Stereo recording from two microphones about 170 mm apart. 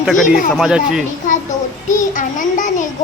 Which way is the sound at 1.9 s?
50° left (ahead or behind).